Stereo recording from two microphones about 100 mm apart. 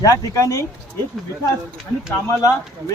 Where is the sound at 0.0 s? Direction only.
35° left (ahead or behind).